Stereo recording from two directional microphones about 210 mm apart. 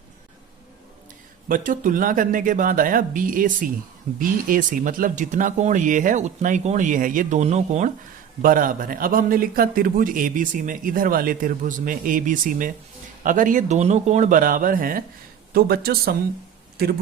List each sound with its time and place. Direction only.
1.5 s a man's voice: 40° right (ahead or behind)